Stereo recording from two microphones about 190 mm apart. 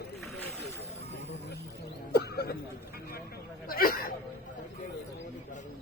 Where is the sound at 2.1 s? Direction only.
60° left (ahead or behind).